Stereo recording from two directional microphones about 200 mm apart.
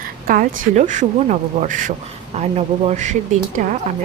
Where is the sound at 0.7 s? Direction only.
35° right (ahead or behind).